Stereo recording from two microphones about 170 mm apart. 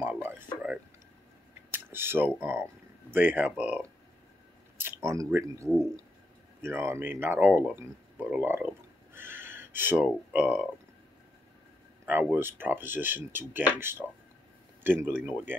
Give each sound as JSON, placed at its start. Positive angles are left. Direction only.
{"t": 0.0, "sound": "a sound", "side_deg": -10}
{"t": 1.7, "sound": "speech", "side_deg": -15}
{"t": 5.7, "sound": "speech", "side_deg": 5}
{"t": 6.6, "sound": "speech", "side_deg": -15}
{"t": 12.1, "sound": "speech", "side_deg": -10}